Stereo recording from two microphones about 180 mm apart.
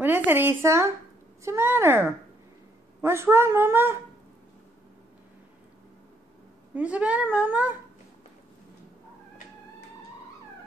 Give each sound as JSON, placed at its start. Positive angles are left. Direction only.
{"t": 0.0, "sound": "speech", "side_deg": -10}
{"t": 3.0, "sound": "speech", "side_deg": -15}
{"t": 6.7, "sound": "speech", "side_deg": -5}